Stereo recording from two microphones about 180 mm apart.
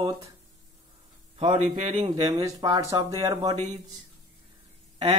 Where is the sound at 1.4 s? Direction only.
40° right (ahead or behind).